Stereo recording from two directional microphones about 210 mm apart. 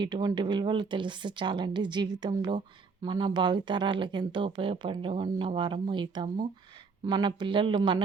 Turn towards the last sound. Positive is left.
turn(degrees=-20)  # may be behind; listen again after turning